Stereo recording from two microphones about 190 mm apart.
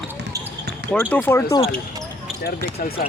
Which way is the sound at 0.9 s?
10° left (ahead or behind).